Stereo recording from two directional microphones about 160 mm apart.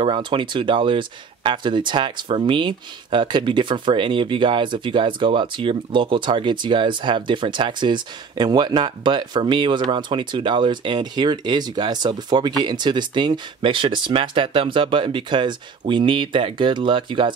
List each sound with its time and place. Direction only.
0.0 s speech: 30° right (ahead or behind)